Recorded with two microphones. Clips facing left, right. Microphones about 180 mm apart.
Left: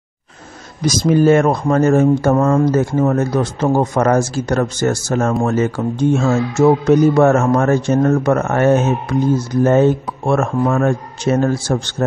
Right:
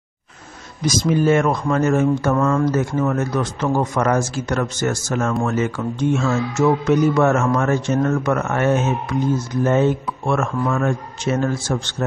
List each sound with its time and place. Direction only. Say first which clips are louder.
0.8 s speech: left 5 dB; 40° left (ahead or behind)